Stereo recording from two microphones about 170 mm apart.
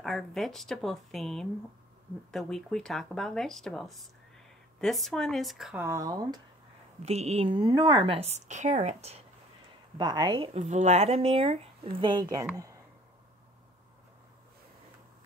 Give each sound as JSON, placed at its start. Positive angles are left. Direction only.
{"t": 0.0, "sound": "speech", "side_deg": 0}
{"t": 5.8, "sound": "speech", "side_deg": -15}
{"t": 7.0, "sound": "speech", "side_deg": -40}
{"t": 9.9, "sound": "speech", "side_deg": -25}